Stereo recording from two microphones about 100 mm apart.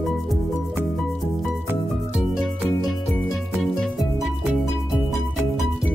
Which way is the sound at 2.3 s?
Centre (ahead or behind).